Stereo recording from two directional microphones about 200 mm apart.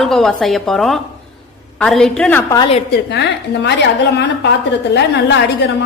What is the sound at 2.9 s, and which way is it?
A woman's voice, 60° left (ahead or behind).